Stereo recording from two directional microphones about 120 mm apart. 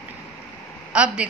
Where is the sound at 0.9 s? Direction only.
10° right (ahead or behind).